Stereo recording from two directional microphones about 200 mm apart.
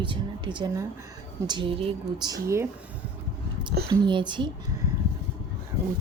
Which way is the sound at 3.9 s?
25° right (ahead or behind).